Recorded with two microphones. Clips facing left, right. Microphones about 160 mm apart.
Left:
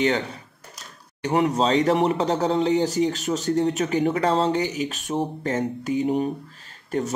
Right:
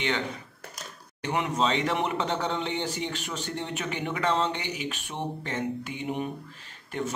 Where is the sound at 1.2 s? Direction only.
40° left (ahead or behind).